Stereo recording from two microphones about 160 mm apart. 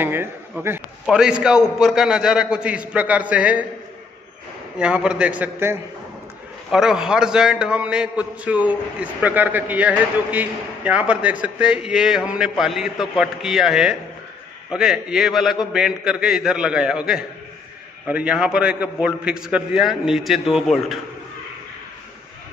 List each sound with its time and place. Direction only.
0.0 s a man's voice: 15° right (ahead or behind)
4.7 s a man's voice: 5° right (ahead or behind)